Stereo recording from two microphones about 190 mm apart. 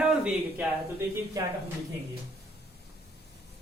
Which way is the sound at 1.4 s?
20° right (ahead or behind).